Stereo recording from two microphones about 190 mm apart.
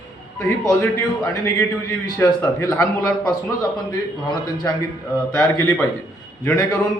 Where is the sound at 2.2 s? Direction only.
15° left (ahead or behind).